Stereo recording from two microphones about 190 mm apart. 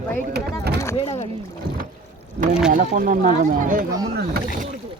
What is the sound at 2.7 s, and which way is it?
Speech, 45° right (ahead or behind).